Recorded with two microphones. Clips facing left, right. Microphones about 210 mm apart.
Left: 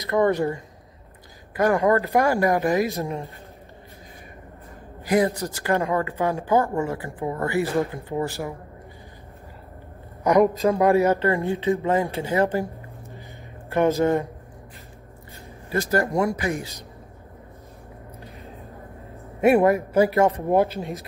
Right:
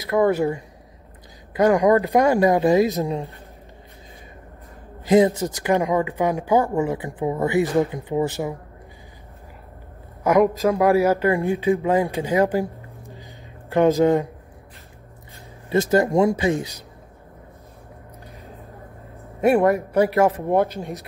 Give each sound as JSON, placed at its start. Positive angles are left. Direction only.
{"t": 0.1, "sound": "speech", "side_deg": -5}
{"t": 1.6, "sound": "speech", "side_deg": -15}
{"t": 5.0, "sound": "speech", "side_deg": -25}
{"t": 10.2, "sound": "speech", "side_deg": 0}
{"t": 13.7, "sound": "speech", "side_deg": -15}
{"t": 15.7, "sound": "speech", "side_deg": -25}
{"t": 19.4, "sound": "speech", "side_deg": 5}